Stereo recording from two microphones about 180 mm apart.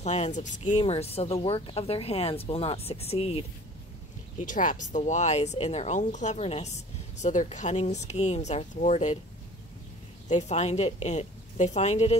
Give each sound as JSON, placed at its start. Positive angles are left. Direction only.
{"t": 0.0, "sound": "speech", "side_deg": 40}
{"t": 4.5, "sound": "speech", "side_deg": 45}
{"t": 10.2, "sound": "speech", "side_deg": 40}